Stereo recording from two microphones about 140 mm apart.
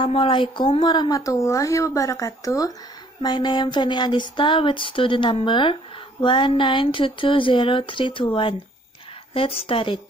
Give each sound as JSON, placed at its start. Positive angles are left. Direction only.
{"t": 0.0, "sound": "speech", "side_deg": 40}